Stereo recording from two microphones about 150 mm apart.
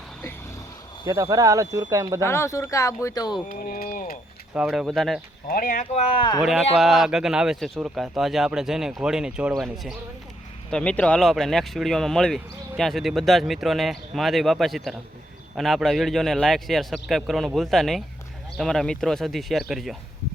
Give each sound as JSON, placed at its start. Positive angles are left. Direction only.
{"t": 1.0, "sound": "speech", "side_deg": -25}
{"t": 2.2, "sound": "speech", "side_deg": 15}
{"t": 3.5, "sound": "speech", "side_deg": 75}
{"t": 4.5, "sound": "speech", "side_deg": -5}
{"t": 5.5, "sound": "speech", "side_deg": 75}
{"t": 6.4, "sound": "speech", "side_deg": 0}